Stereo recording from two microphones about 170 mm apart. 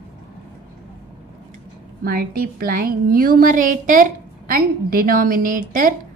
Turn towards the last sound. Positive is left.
turn(degrees=-50)  # may be behind; listen again after turning